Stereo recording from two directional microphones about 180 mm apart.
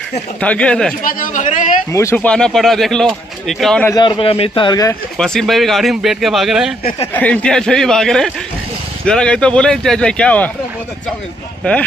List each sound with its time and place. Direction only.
0.4 s speech: 5° left (ahead or behind)
1.0 s a man's voice: 45° left (ahead or behind)
1.9 s speech: 15° left (ahead or behind)
3.9 s a man's voice: 25° left (ahead or behind)
5.1 s speech: 5° left (ahead or behind)